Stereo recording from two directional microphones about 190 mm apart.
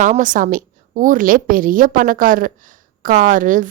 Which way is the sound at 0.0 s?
40° right (ahead or behind).